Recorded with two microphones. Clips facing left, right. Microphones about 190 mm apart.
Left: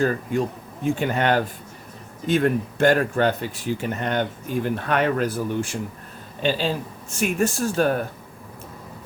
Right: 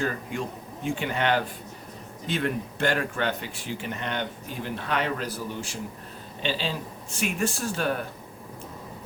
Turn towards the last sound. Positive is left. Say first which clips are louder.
# left 6 dB
turn(degrees=45)  # may be behind; listen again after turning